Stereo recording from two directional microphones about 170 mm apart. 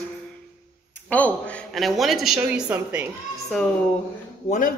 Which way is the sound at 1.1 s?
10° left (ahead or behind).